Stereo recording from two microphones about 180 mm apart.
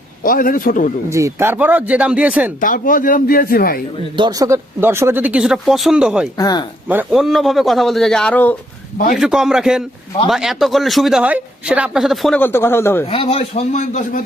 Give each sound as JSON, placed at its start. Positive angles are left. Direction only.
{"t": 0.2, "sound": "speech", "side_deg": 50}
{"t": 1.1, "sound": "speech", "side_deg": -15}
{"t": 2.6, "sound": "speech", "side_deg": 50}
{"t": 4.2, "sound": "speech", "side_deg": -20}
{"t": 6.3, "sound": "speech", "side_deg": 20}
{"t": 6.8, "sound": "speech", "side_deg": -5}
{"t": 9.1, "sound": "speech", "side_deg": -5}
{"t": 12.4, "sound": "speech", "side_deg": 10}
{"t": 13.1, "sound": "a man's voice", "side_deg": 30}